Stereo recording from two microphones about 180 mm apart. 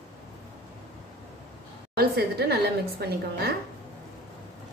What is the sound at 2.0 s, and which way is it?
A woman's voice, 60° right (ahead or behind).